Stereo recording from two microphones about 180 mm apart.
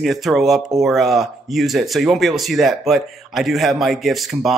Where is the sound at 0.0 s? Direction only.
Centre (ahead or behind).